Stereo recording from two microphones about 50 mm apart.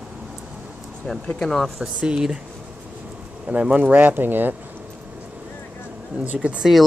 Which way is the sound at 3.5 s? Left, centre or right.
Right.